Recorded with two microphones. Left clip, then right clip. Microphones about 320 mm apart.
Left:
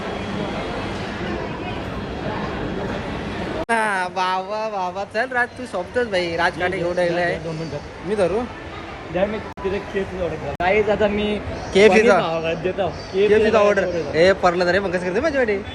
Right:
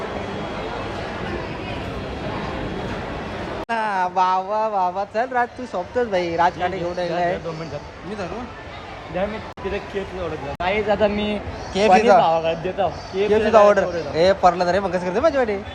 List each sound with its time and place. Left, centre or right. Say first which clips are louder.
2.2 s a sound: left 2 dB; centre
3.7 s speech: left 1 dB; centre
9.2 s speech: left 3 dB; right
10.6 s speech: left 2 dB; right
11.7 s speech: left 1 dB; centre